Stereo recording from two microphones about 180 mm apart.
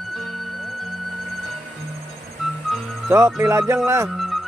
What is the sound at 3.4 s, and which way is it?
Speech, 15° right (ahead or behind).